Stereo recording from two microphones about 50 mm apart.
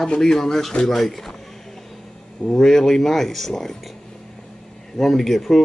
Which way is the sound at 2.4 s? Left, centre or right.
Centre.